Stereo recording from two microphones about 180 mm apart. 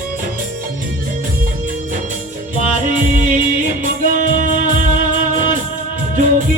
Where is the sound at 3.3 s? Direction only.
45° right (ahead or behind).